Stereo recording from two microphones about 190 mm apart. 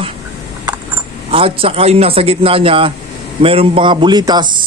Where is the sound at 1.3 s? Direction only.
30° right (ahead or behind).